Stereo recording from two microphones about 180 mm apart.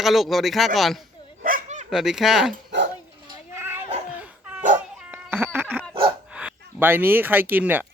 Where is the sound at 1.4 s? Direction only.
50° right (ahead or behind).